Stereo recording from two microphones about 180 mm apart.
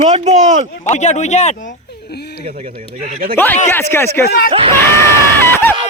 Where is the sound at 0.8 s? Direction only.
40° left (ahead or behind).